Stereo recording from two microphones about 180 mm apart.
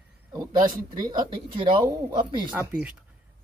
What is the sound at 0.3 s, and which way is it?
Speech, 20° right (ahead or behind).